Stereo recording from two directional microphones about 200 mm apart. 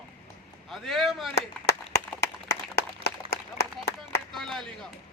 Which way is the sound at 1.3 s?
55° left (ahead or behind).